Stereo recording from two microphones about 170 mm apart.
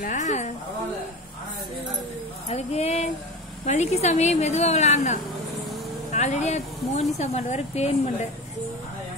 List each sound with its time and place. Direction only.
0.0 s a woman's voice: 45° left (ahead or behind)
2.4 s speech: 40° left (ahead or behind)